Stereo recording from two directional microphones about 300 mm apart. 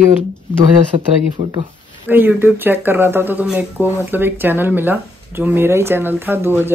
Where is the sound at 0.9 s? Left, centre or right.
Right.